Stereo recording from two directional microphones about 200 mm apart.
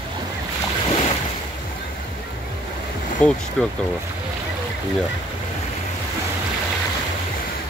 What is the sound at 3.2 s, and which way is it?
Speech, 5° left (ahead or behind).